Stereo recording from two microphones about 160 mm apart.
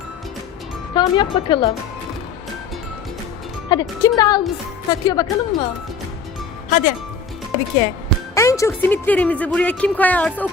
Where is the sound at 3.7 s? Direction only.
25° left (ahead or behind).